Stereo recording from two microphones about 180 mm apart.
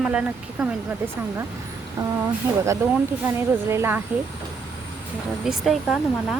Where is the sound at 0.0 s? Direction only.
5° right (ahead or behind).